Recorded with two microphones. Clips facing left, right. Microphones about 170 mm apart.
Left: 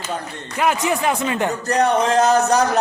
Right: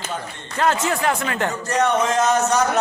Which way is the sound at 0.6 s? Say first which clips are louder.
Left 1 dB; 15° left (ahead or behind).